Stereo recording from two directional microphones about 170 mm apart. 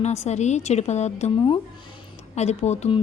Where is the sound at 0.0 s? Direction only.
40° left (ahead or behind).